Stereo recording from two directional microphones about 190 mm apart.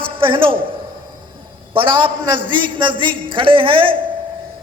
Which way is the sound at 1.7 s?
25° right (ahead or behind).